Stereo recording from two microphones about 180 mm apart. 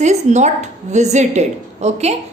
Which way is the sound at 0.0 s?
40° right (ahead or behind).